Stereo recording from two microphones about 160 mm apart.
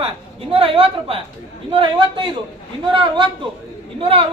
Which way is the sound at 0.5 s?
35° right (ahead or behind).